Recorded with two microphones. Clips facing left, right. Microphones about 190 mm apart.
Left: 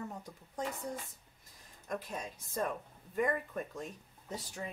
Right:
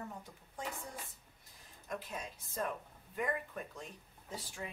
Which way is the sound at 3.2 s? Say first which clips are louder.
Left 5 dB; 45° left (ahead or behind).